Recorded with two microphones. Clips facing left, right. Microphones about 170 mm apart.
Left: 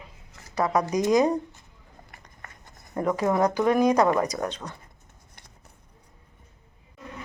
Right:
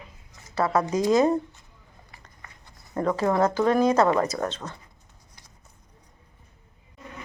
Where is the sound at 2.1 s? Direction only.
55° left (ahead or behind).